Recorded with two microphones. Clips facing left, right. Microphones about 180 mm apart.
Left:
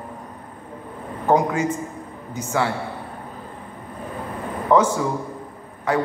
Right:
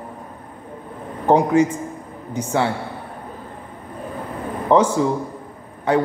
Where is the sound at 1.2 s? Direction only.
30° right (ahead or behind).